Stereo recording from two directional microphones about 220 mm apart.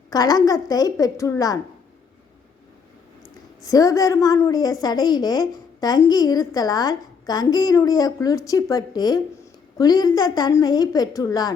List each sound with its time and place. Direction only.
0.1 s a woman's voice: 15° left (ahead or behind)
3.6 s a woman's voice: 15° left (ahead or behind)